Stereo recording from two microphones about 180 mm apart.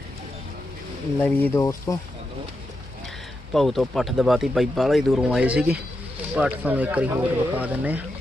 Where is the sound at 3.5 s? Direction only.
Centre (ahead or behind).